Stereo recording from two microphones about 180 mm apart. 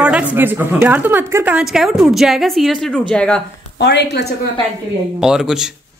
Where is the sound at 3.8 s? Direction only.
70° left (ahead or behind).